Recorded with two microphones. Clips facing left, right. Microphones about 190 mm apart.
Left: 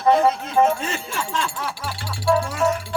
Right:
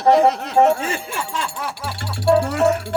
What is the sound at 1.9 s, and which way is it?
Speech, 60° right (ahead or behind).